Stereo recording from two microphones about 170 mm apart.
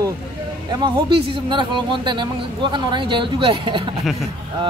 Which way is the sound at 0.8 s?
30° right (ahead or behind).